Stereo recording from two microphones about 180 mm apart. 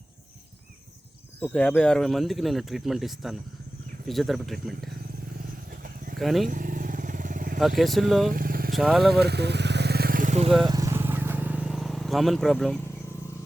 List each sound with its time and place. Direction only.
1.4 s speech: 5° left (ahead or behind)
5.7 s vehicle: 50° right (ahead or behind)
6.1 s speech: centre (ahead or behind)
6.5 s vehicle: 50° right (ahead or behind)
7.8 s speech: centre (ahead or behind)
8.3 s vehicle: 50° right (ahead or behind)
8.7 s speech: centre (ahead or behind)
9.1 s vehicle: 65° right (ahead or behind); by 10.5 s 40° right (ahead or behind)
10.7 s vehicle: 20° right (ahead or behind); by 12.8 s centre (ahead or behind)